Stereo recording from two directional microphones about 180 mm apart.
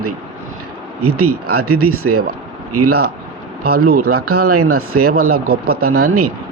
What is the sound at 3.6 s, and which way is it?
Speech, 55° right (ahead or behind).